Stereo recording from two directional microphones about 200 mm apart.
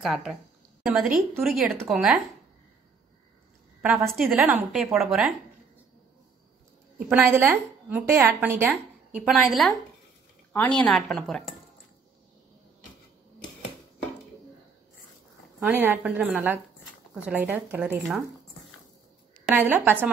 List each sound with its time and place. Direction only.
0.0 s a woman's voice: centre (ahead or behind)
3.8 s a woman's voice: centre (ahead or behind)
7.1 s a woman's voice: 10° right (ahead or behind)
15.6 s a woman's voice: 10° right (ahead or behind)
19.4 s a woman's voice: 10° right (ahead or behind)